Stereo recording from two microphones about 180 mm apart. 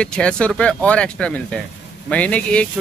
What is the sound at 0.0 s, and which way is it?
Speech, 5° left (ahead or behind).